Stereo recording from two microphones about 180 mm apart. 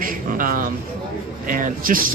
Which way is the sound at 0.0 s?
50° right (ahead or behind).